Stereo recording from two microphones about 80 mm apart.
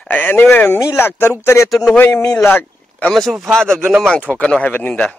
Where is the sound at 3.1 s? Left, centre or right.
Centre; by 5.0 s left.